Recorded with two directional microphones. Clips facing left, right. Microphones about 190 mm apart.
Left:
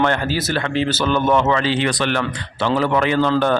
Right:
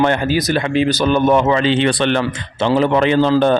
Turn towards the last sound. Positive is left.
turn(degrees=-20)  # may be behind; listen again after turning